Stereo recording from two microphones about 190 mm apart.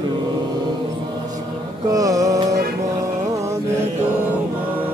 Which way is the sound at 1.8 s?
20° right (ahead or behind).